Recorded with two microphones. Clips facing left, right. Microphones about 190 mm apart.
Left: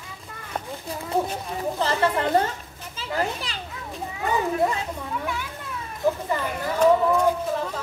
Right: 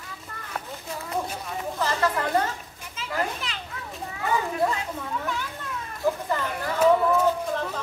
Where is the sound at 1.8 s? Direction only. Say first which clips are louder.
Left 2 dB; 30° left (ahead or behind).